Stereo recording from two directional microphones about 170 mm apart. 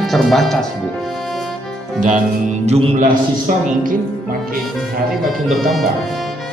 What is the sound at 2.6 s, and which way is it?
Speech, 40° right (ahead or behind).